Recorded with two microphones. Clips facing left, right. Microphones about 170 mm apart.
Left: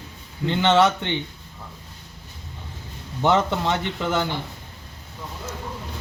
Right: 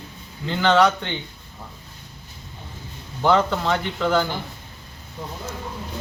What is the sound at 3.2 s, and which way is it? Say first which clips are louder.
Speech: right 1 dB; 20° left (ahead or behind).